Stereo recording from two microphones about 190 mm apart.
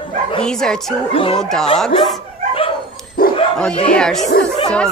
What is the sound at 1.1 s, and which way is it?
Speech, 30° left (ahead or behind).